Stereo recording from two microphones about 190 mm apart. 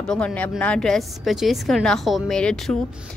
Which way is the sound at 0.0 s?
5° left (ahead or behind).